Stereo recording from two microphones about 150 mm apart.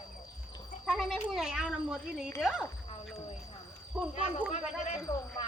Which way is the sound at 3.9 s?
5° right (ahead or behind).